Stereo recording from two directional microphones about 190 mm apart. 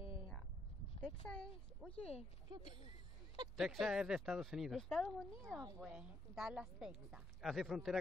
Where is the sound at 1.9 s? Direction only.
35° left (ahead or behind).